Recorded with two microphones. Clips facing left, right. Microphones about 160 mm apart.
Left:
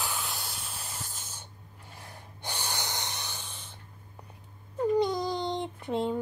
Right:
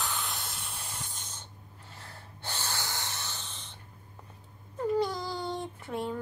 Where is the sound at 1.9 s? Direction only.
15° left (ahead or behind).